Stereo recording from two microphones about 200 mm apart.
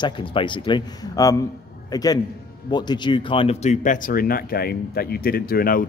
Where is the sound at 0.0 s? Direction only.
25° left (ahead or behind).